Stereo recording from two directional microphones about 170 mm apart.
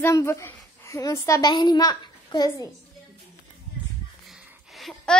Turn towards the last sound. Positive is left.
turn(degrees=0)  # may be behind; listen again after turning